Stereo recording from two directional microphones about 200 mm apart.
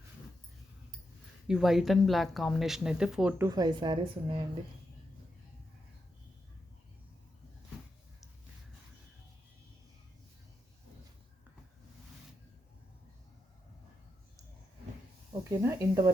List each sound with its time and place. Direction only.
1.5 s speech: centre (ahead or behind); by 4.4 s 25° right (ahead or behind)
15.3 s speech: 15° right (ahead or behind)